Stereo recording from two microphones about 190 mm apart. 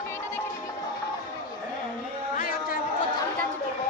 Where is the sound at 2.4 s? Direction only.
45° left (ahead or behind).